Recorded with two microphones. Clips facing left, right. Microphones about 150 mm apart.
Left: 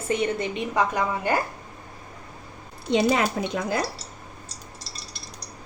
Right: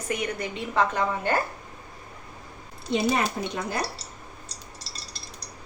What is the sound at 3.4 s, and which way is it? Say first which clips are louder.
Speech: left 3 dB; 90° left.